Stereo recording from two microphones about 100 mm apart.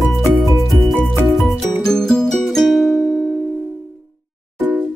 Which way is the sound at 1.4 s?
5° left (ahead or behind).